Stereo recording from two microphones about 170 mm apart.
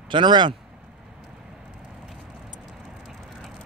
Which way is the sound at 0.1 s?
25° right (ahead or behind).